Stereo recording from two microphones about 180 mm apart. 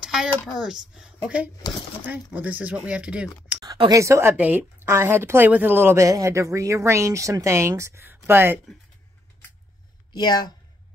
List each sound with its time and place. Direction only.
0.0 s a sound: 5° right (ahead or behind)
0.6 s a woman's voice: centre (ahead or behind)
3.6 s a woman's voice: 20° right (ahead or behind)
10.1 s speech: 25° left (ahead or behind)